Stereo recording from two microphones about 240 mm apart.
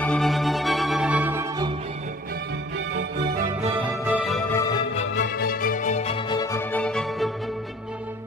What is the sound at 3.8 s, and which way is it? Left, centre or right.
Music, centre.